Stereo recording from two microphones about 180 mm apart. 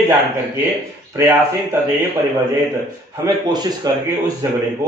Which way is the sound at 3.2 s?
20° right (ahead or behind).